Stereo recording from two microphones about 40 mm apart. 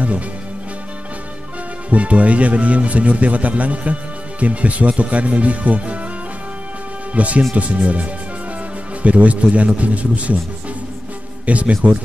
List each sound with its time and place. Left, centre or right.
1.9 s speech: right
7.2 s speech: right
11.4 s speech: right